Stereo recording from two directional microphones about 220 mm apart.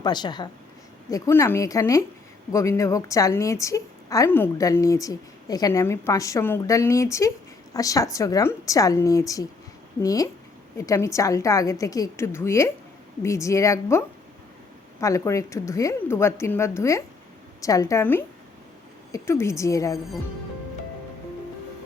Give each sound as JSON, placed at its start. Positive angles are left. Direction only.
{"t": 0.0, "sound": "a woman's voice", "side_deg": 20}
{"t": 15.0, "sound": "a woman's voice", "side_deg": 15}